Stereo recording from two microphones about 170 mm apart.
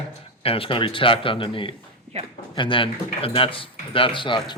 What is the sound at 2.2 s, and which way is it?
Speech, 40° right (ahead or behind).